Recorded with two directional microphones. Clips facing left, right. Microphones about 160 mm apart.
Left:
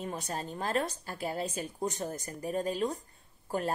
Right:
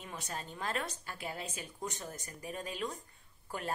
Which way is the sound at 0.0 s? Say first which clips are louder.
Left 7 dB; 40° left (ahead or behind).